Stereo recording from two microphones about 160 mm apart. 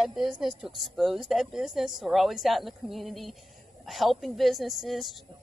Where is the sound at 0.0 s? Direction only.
Centre (ahead or behind).